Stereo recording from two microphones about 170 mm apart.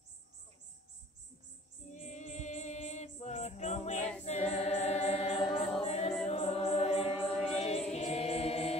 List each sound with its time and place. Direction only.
1.9 s music: 45° left (ahead or behind)
4.2 s choir: 40° left (ahead or behind)
6.2 s music: 40° left (ahead or behind)
7.2 s music: centre (ahead or behind)
7.5 s music: 35° left (ahead or behind)